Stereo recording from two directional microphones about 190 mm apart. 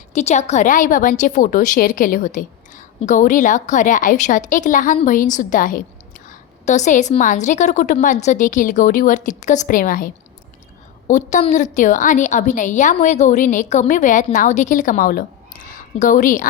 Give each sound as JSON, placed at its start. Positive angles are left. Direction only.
{"t": 0.1, "sound": "a woman's voice", "side_deg": 35}
{"t": 11.1, "sound": "a woman's voice", "side_deg": 40}